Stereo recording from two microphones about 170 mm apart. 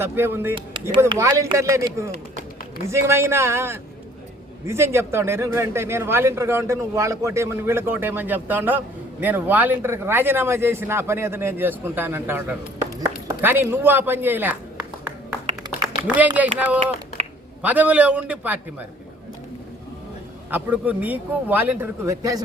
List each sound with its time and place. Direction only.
0.0 s speech: 15° right (ahead or behind)
0.5 s speech: 30° right (ahead or behind); by 14.5 s 10° right (ahead or behind)
16.0 s speech: 10° right (ahead or behind)
20.5 s speech: 10° right (ahead or behind)